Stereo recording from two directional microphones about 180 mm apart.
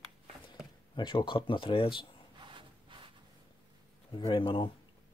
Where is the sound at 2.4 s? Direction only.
30° right (ahead or behind).